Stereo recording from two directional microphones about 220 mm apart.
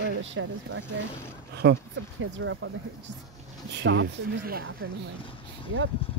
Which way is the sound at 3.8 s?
50° right (ahead or behind).